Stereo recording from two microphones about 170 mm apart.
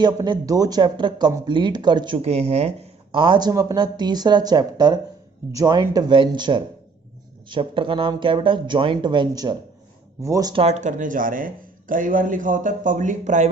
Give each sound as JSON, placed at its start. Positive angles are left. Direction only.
{"t": 0.0, "sound": "speech", "side_deg": -25}
{"t": 10.5, "sound": "speech", "side_deg": -35}